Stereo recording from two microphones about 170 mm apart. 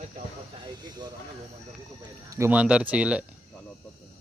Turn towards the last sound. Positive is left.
turn(degrees=-5)  # may be behind; listen again after turning